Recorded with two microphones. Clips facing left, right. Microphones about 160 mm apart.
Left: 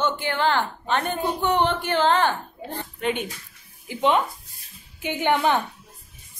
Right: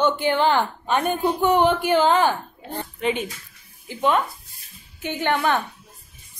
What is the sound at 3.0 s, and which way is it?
Speech, centre (ahead or behind).